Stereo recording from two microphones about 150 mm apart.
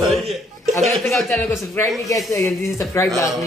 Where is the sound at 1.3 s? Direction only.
15° left (ahead or behind).